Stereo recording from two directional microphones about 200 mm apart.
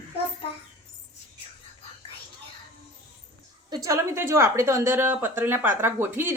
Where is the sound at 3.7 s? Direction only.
15° right (ahead or behind).